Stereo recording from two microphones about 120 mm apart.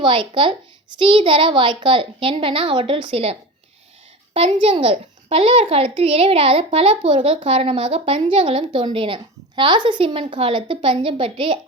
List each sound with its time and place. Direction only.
0.0 s speech: 45° right (ahead or behind)
4.4 s speech: 55° right (ahead or behind)